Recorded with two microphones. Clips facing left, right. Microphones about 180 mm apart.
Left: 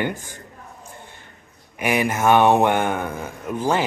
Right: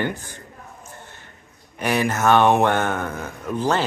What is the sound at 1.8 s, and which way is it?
Speech, 10° left (ahead or behind).